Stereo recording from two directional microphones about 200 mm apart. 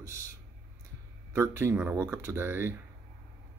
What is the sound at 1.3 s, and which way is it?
Speech, 15° right (ahead or behind).